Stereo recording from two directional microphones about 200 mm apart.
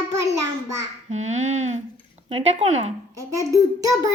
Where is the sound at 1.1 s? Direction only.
35° right (ahead or behind).